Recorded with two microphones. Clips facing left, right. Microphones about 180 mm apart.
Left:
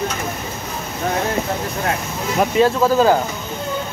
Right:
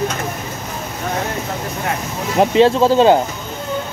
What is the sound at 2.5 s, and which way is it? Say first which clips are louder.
Speech: right 3 dB; 25° right (ahead or behind).